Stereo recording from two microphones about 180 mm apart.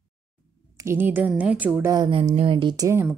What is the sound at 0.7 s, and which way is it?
Speech, 15° right (ahead or behind).